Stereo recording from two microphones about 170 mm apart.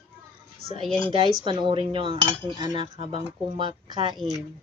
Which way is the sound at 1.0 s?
30° right (ahead or behind).